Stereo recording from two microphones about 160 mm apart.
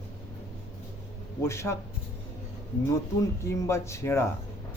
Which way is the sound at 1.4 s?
15° left (ahead or behind).